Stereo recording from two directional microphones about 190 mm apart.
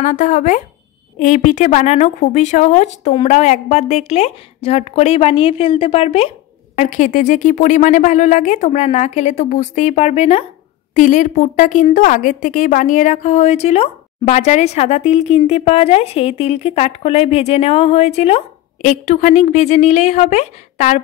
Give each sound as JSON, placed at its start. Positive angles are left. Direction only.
{"t": 0.0, "sound": "a woman's voice", "side_deg": 40}